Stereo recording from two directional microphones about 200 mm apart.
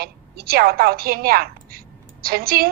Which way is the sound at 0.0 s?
50° right (ahead or behind).